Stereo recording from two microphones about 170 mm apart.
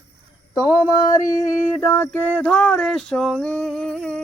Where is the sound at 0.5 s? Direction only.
20° left (ahead or behind).